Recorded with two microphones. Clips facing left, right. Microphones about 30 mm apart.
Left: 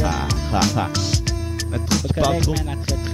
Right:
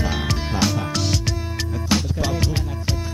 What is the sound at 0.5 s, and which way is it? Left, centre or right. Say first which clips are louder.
Speech: left 2 dB; left.